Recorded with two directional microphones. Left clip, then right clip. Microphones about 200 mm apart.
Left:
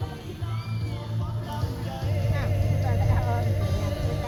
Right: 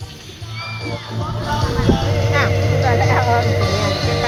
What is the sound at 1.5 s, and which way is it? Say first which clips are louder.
Speech: right 18 dB; 55° right (ahead or behind).